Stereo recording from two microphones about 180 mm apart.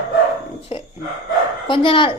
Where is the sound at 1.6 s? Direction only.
25° left (ahead or behind).